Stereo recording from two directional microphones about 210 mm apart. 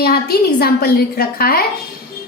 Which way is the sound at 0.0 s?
45° left (ahead or behind).